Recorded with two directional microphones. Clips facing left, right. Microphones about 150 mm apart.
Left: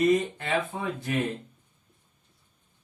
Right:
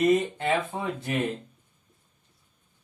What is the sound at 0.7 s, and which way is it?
Speech, 30° right (ahead or behind).